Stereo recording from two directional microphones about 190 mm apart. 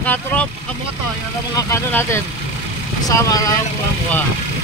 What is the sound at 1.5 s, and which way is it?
Speech, 15° left (ahead or behind).